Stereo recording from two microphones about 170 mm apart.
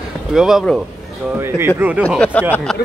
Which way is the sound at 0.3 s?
5° right (ahead or behind).